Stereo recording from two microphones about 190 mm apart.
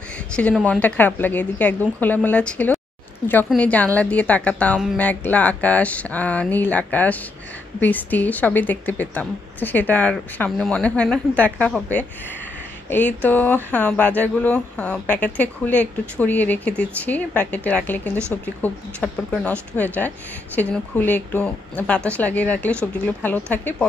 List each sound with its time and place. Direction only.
0.3 s speech: 5° left (ahead or behind)